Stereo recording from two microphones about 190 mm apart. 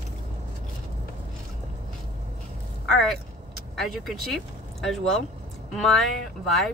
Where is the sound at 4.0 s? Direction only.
Centre (ahead or behind).